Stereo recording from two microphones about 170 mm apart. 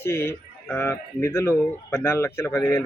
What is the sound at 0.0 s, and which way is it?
A man's voice, 15° left (ahead or behind).